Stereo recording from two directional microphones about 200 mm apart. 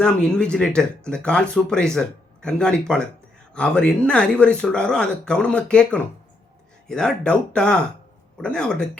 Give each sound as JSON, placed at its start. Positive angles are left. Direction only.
{"t": 0.0, "sound": "speech", "side_deg": 5}